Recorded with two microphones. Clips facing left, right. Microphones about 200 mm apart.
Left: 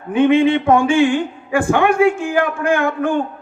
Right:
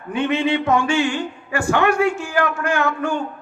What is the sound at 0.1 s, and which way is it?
Speech, 55° left (ahead or behind).